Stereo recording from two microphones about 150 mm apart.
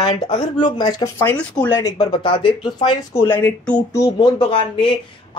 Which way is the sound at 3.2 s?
15° left (ahead or behind).